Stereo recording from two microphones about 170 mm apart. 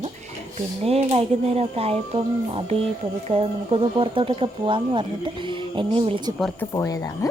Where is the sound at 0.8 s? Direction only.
35° right (ahead or behind).